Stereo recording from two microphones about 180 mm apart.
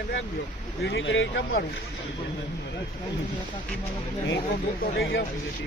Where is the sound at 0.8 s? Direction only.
80° left.